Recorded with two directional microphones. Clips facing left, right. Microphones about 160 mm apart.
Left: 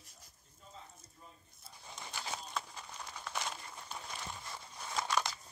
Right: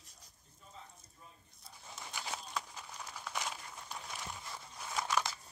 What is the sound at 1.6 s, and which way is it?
Crumpling, centre (ahead or behind).